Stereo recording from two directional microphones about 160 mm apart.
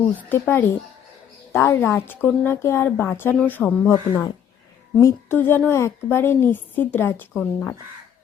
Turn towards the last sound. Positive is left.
turn(degrees=10)  # may be behind; listen again after turning